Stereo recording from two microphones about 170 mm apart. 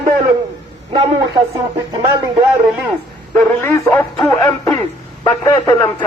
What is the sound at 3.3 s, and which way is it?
Speech, 15° left (ahead or behind).